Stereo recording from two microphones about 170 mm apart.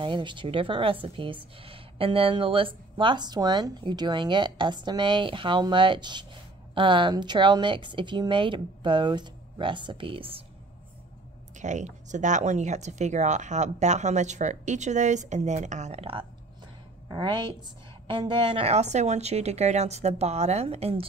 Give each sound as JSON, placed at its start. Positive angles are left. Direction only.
{"t": 0.0, "sound": "a woman's voice", "side_deg": -30}
{"t": 11.5, "sound": "a woman's voice", "side_deg": -45}